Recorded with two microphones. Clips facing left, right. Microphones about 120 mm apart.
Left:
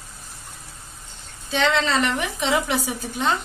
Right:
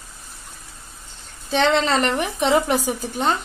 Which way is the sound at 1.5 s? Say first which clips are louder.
Right 3 dB; 45° right (ahead or behind).